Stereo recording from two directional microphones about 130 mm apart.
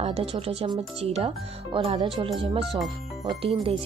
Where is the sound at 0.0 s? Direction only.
50° right (ahead or behind).